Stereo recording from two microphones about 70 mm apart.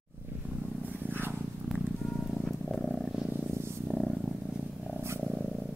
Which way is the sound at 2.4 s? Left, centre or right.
Centre.